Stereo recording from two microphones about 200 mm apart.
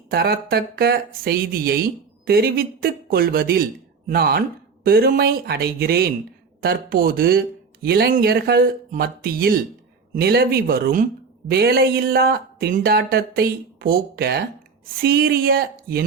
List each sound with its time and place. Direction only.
0.1 s speech: 50° right (ahead or behind)